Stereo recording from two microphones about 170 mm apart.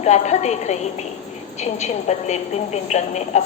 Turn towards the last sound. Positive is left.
turn(degrees=40)  # may be behind; listen again after turning